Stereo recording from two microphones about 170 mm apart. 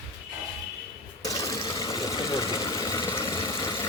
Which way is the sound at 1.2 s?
20° left (ahead or behind).